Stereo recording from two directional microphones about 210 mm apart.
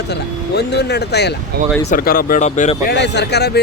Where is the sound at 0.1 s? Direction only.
50° left (ahead or behind); by 2.7 s 35° left (ahead or behind).